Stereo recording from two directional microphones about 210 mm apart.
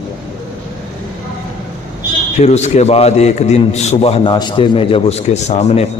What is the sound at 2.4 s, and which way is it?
A man's voice, 30° left (ahead or behind).